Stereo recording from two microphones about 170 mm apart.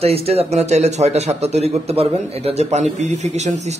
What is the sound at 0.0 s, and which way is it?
A man's voice, 35° right (ahead or behind).